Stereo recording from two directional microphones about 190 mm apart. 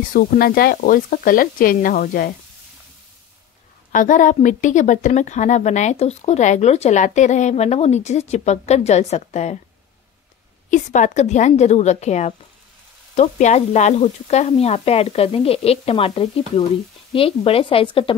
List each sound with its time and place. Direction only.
0.1 s speech: 50° left (ahead or behind)
3.9 s a woman's voice: 45° left (ahead or behind)
10.7 s a woman's voice: 40° left (ahead or behind)